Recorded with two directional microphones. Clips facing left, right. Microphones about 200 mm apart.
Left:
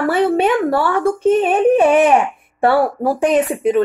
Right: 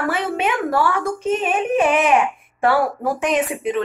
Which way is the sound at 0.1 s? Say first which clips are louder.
Left 7 dB; 35° left (ahead or behind).